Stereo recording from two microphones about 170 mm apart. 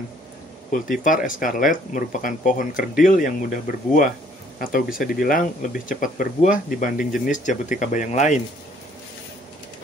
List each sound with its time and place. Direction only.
0.7 s speech: 50° left (ahead or behind)